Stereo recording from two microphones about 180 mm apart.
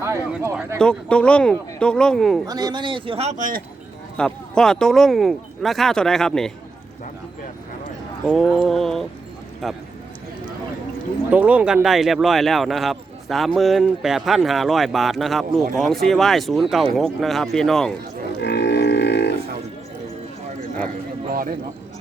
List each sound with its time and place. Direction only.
0.0 s a sound: 15° right (ahead or behind)
0.8 s speech: 5° left (ahead or behind)
2.5 s speech: 20° right (ahead or behind); by 3.6 s 45° right (ahead or behind)
4.2 s speech: 5° left (ahead or behind)
8.3 s speech: 5° left (ahead or behind)
11.3 s speech: 5° right (ahead or behind)
18.3 s livestock: 65° left (ahead or behind)